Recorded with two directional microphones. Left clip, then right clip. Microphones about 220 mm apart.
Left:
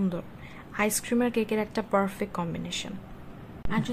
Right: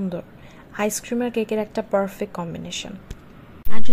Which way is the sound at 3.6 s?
35° right (ahead or behind).